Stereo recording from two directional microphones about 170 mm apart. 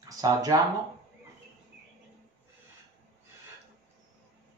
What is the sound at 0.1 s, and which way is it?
Speech, 20° right (ahead or behind).